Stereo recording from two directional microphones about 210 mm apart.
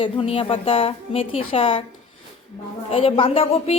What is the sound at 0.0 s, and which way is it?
A woman's voice, 25° left (ahead or behind).